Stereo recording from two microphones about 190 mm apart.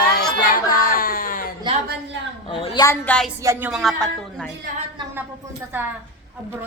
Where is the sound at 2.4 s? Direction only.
30° left (ahead or behind).